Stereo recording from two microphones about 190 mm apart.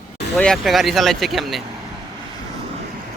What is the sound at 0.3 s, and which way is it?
Speech, 5° left (ahead or behind).